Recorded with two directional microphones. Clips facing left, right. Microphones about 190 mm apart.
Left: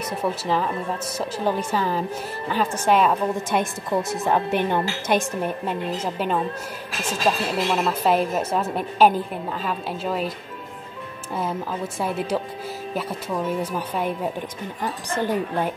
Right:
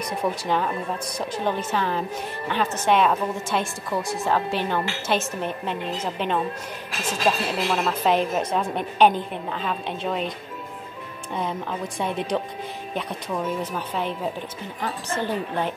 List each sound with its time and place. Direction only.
0.0 s speech: 5° left (ahead or behind)
3.4 s a woman's voice: 20° left (ahead or behind); by 10.3 s 5° left (ahead or behind)
11.3 s a woman's voice: 5° left (ahead or behind)